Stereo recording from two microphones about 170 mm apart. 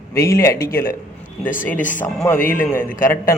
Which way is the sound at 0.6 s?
60° left (ahead or behind).